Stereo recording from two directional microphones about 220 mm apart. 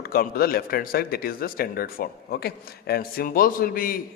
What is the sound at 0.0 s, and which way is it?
Speech, 45° left (ahead or behind).